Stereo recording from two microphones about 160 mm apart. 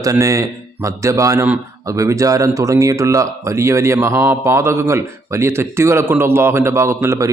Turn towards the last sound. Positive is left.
turn(degrees=-20)  # may be behind; listen again after turning